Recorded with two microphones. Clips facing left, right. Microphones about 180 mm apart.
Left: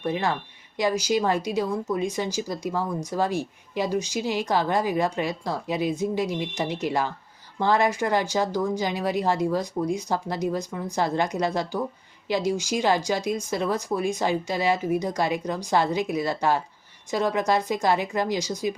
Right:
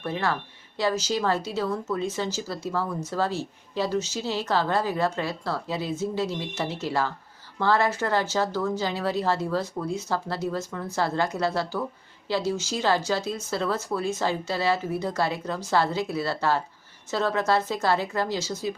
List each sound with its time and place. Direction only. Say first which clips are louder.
0.0 s speech: left 2 dB; 15° left (ahead or behind)